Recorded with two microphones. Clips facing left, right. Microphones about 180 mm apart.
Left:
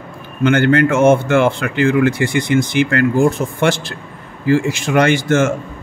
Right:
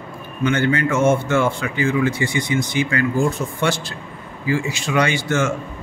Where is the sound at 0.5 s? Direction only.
60° left (ahead or behind).